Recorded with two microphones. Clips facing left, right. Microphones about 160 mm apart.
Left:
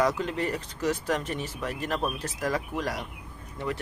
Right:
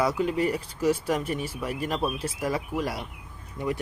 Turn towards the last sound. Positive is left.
turn(degrees=-15)  # may be behind; listen again after turning